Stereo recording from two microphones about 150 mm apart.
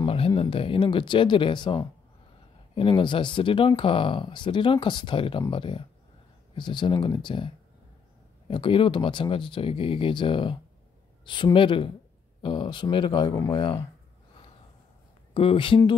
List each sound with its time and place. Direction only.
0.0 s a sound: 40° left (ahead or behind)
0.3 s speech: 35° left (ahead or behind)
15.3 s speech: 35° left (ahead or behind)